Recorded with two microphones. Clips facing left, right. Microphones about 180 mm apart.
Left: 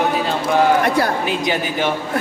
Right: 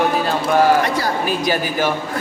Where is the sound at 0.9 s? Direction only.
55° left (ahead or behind).